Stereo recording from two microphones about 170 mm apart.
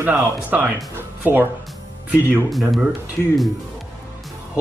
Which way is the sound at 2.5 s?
Centre (ahead or behind).